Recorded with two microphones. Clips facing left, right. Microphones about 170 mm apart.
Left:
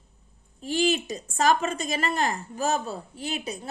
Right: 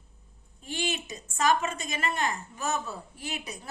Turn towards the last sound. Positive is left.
turn(degrees=30)  # may be behind; listen again after turning